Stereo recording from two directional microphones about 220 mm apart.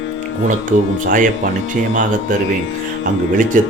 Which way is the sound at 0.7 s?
35° right (ahead or behind).